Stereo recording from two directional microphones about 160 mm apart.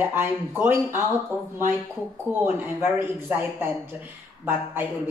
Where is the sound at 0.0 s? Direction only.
15° right (ahead or behind).